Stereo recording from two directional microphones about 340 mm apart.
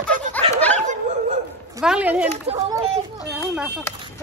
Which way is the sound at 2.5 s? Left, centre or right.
Centre.